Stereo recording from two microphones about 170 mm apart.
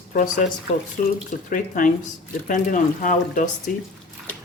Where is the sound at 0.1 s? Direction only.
50° left (ahead or behind).